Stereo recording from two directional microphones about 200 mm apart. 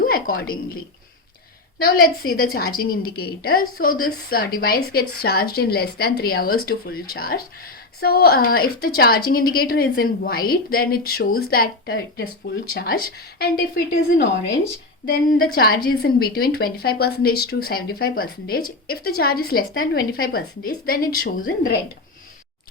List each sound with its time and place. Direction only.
0.0 s a woman's voice: 45° left (ahead or behind)
1.8 s a woman's voice: 50° left (ahead or behind)